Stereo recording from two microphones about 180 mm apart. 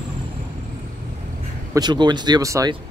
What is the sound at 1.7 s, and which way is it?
Speech, 25° right (ahead or behind).